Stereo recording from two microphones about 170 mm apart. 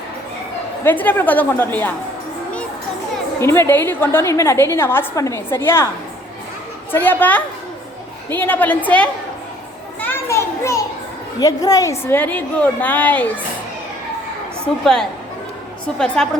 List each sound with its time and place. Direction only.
0.9 s a woman's voice: 10° left (ahead or behind)
3.4 s a woman's voice: 15° left (ahead or behind)
6.9 s a woman's voice: 10° left (ahead or behind)
10.0 s children playing: 15° left (ahead or behind)
11.3 s a woman's voice: 20° left (ahead or behind)
14.6 s a woman's voice: 5° left (ahead or behind)